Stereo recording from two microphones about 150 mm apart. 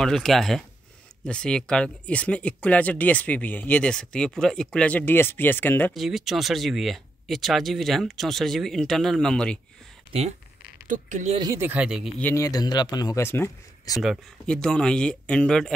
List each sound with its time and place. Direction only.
0.0 s speech: 5° left (ahead or behind)
5.9 s speech: centre (ahead or behind)
10.9 s speech: 55° right (ahead or behind)
11.5 s speech: 10° right (ahead or behind)
12.2 s speech: 15° left (ahead or behind)
12.4 s speech: 25° left (ahead or behind)
14.0 s speech: 5° left (ahead or behind)